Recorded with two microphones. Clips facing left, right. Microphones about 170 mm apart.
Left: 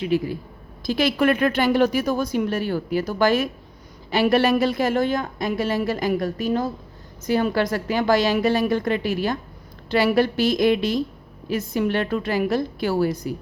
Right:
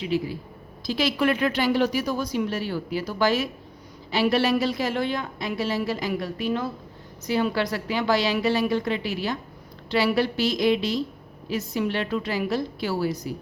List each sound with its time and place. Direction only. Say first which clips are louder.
0.0 s a woman's voice: left 4 dB; 50° left (ahead or behind)